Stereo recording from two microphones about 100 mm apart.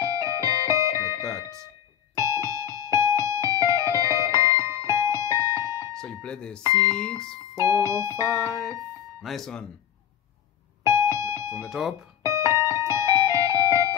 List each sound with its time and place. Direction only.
0.0 s music: 30° right (ahead or behind)
5.9 s a sound: 10° left (ahead or behind)
6.8 s speech: 10° left (ahead or behind)
7.6 s music: 30° right (ahead or behind)
8.2 s music: 5° left (ahead or behind)
11.0 s music: 30° right (ahead or behind)
11.6 s music: centre (ahead or behind)
12.2 s music: 30° right (ahead or behind)